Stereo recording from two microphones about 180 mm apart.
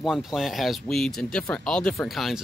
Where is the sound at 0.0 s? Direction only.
Centre (ahead or behind).